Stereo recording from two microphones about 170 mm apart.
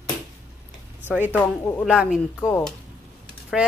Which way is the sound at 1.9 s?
5° right (ahead or behind).